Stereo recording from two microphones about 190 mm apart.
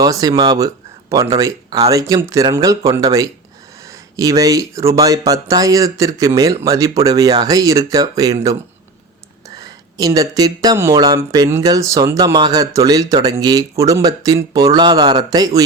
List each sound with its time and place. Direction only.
0.0 s speech: 20° right (ahead or behind)
9.6 s speech: 20° right (ahead or behind)